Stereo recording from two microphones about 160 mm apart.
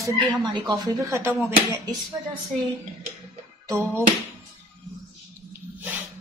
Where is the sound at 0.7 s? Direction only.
15° right (ahead or behind).